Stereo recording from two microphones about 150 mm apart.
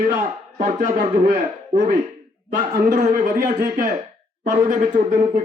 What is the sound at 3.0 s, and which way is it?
Speech, 60° right (ahead or behind).